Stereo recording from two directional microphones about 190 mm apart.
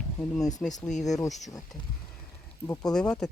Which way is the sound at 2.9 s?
5° left (ahead or behind).